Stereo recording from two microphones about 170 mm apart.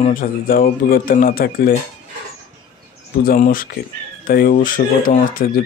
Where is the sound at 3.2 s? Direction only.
55° left (ahead or behind).